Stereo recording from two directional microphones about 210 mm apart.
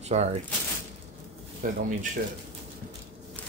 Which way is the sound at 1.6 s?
40° right (ahead or behind).